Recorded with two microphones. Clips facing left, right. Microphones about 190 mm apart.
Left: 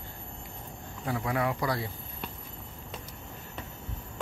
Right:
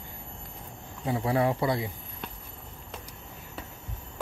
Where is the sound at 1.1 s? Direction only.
30° right (ahead or behind).